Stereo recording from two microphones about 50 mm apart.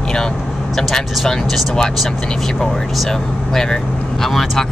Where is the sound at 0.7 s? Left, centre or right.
Centre.